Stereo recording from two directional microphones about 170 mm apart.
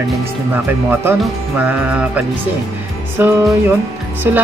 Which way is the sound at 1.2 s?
10° right (ahead or behind).